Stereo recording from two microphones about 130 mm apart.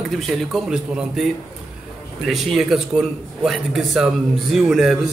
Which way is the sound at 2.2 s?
Centre (ahead or behind).